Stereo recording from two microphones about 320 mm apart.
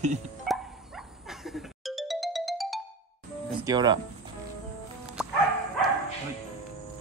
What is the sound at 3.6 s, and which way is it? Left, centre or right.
Speech, centre.